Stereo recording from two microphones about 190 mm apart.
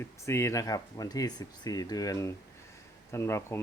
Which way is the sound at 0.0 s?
15° left (ahead or behind).